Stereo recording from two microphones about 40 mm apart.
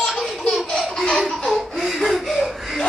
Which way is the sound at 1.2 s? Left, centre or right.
Centre.